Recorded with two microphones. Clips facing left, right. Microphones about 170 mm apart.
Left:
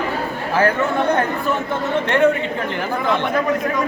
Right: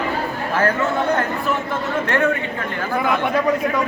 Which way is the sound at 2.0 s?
20° left (ahead or behind).